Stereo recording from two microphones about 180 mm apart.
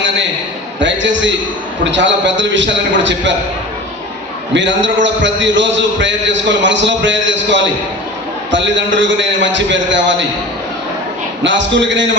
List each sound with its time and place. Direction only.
0.8 s a man's voice: 90° right
4.5 s a man's voice: 90° right
11.4 s a man's voice: 90° right